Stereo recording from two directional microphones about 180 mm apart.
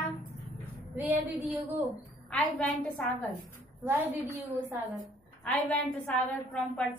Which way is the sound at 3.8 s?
10° right (ahead or behind).